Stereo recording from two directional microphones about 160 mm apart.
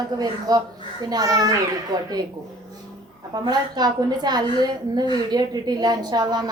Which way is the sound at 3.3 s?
25° right (ahead or behind).